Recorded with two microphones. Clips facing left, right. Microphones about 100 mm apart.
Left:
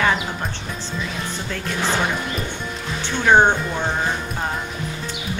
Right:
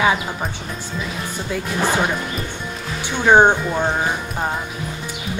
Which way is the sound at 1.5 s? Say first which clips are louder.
Right 4 dB; 10° right (ahead or behind).